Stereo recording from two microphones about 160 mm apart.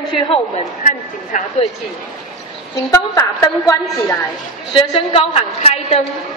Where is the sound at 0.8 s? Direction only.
50° left (ahead or behind).